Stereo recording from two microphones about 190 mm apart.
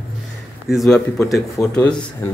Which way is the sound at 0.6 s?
Centre (ahead or behind).